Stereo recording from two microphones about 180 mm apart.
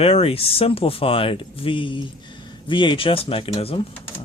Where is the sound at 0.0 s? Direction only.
35° left (ahead or behind).